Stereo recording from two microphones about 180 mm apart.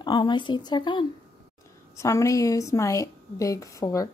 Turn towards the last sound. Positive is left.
turn(degrees=15)  # may be behind; listen again after turning